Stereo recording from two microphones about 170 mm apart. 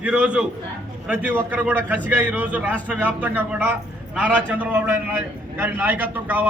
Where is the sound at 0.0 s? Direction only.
5° right (ahead or behind).